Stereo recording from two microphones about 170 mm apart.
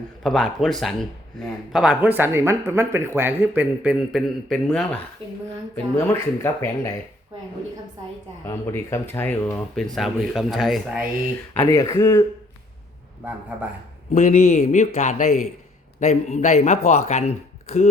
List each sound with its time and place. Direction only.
0.2 s a man's voice: centre (ahead or behind)
6.0 s speech: 15° left (ahead or behind)
8.4 s a man's voice: 15° left (ahead or behind); by 11.1 s 5° right (ahead or behind)
11.6 s speech: 20° left (ahead or behind)
14.1 s speech: 50° left (ahead or behind)